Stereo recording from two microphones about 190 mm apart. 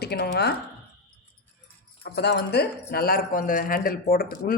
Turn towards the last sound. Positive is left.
turn(degrees=50)  # may be behind; listen again after turning